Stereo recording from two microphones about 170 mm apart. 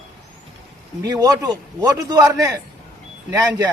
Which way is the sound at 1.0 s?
20° right (ahead or behind).